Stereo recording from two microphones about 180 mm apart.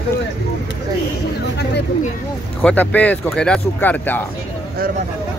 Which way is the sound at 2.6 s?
10° left (ahead or behind).